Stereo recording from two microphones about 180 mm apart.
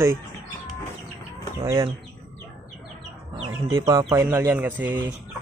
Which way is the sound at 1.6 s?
20° right (ahead or behind).